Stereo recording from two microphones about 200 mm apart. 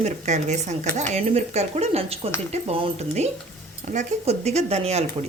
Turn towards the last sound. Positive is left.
turn(degrees=-30)  # may be behind; listen again after turning